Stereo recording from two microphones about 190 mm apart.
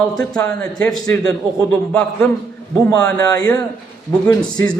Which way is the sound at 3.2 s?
20° left (ahead or behind).